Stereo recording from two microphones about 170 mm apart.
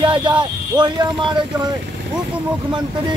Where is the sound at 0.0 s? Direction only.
30° right (ahead or behind).